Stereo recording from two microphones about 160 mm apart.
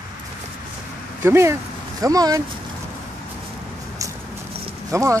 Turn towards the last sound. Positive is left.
turn(degrees=-20)  # may be behind; listen again after turning